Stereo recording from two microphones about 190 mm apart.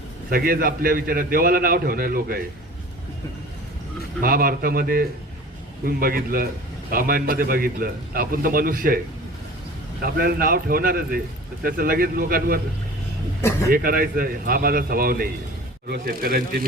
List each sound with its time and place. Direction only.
0.3 s a man's voice: 50° right (ahead or behind)
4.2 s a man's voice: 50° right (ahead or behind)
10.0 s a man's voice: 55° right (ahead or behind)
13.7 s a man's voice: 50° right (ahead or behind)